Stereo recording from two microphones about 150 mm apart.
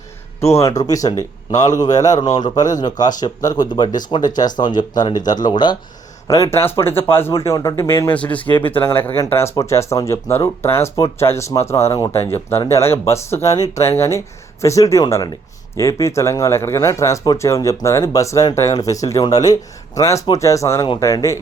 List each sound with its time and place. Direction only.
0.4 s speech: 20° left (ahead or behind)